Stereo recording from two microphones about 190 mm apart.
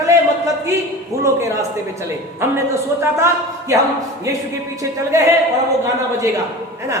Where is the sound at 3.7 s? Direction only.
15° right (ahead or behind).